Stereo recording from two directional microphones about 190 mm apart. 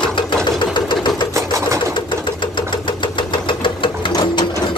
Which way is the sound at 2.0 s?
25° left (ahead or behind).